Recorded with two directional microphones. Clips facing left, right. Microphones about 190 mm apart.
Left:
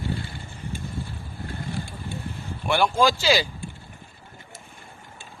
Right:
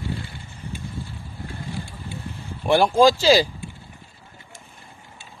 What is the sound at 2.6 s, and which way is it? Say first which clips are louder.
Speech: right 5 dB; 35° right (ahead or behind).